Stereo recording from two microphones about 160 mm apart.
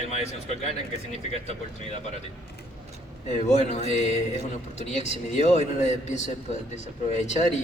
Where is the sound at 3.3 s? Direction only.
45° left (ahead or behind).